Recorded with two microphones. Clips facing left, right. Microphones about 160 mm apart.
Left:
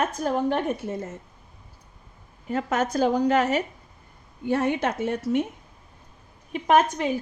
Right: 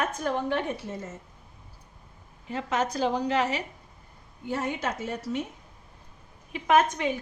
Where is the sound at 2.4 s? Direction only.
50° left (ahead or behind).